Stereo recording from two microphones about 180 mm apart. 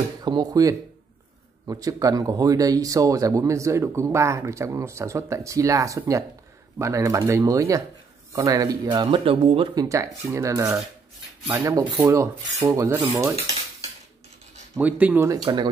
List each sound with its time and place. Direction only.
0.2 s speech: 20° right (ahead or behind)
9.8 s speech: 15° right (ahead or behind)
14.8 s speech: 10° right (ahead or behind)